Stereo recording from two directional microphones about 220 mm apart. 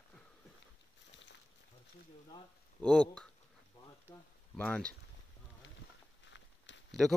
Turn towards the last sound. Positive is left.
turn(degrees=55)  # may be behind; listen again after turning